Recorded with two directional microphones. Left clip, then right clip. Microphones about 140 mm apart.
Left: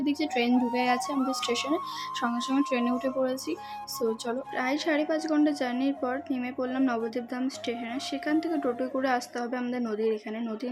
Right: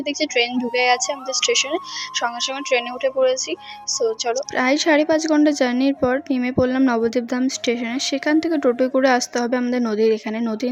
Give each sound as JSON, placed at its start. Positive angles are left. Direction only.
{"t": 0.7, "sound": "a woman's voice", "side_deg": -60}
{"t": 2.2, "sound": "a woman's voice", "side_deg": -60}